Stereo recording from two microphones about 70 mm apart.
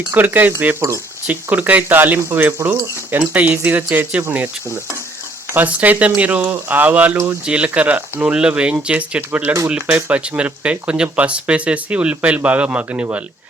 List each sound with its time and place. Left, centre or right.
0.1 s speech: right
5.5 s speech: right